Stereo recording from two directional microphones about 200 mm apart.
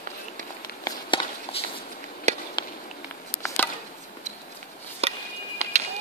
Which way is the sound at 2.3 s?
35° right (ahead or behind).